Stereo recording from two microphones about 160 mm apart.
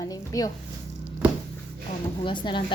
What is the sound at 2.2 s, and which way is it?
Speech, 30° left (ahead or behind).